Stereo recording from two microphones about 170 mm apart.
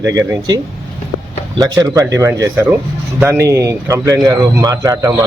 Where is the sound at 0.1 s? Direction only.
20° right (ahead or behind).